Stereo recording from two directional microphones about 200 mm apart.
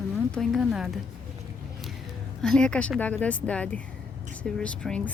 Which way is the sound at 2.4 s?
5° left (ahead or behind).